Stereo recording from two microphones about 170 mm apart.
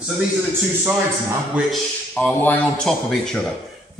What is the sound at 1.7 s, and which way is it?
Speech, 5° left (ahead or behind).